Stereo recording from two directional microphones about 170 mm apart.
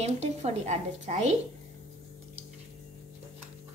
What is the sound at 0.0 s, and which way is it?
A woman's voice, 40° right (ahead or behind).